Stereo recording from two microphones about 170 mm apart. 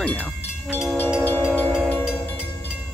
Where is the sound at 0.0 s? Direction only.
10° left (ahead or behind).